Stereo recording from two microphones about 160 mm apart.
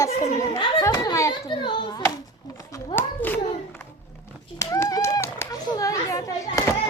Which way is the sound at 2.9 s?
10° left (ahead or behind).